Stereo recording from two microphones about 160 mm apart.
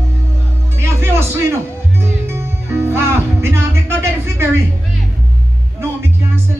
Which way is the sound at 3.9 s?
15° right (ahead or behind).